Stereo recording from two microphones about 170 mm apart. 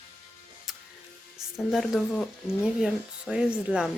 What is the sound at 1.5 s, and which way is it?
Speech, centre (ahead or behind).